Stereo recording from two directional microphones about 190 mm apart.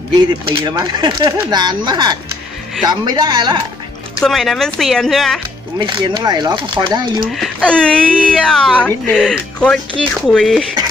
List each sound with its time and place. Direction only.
0.5 s speech: 25° right (ahead or behind)
4.2 s speech: centre (ahead or behind)
5.8 s speech: 25° right (ahead or behind)
7.3 s speech: 5° left (ahead or behind)